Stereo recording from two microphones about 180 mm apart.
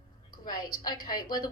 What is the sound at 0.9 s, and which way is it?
Speech, 20° left (ahead or behind).